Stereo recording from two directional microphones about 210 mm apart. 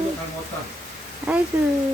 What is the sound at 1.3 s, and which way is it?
Speech, 5° right (ahead or behind).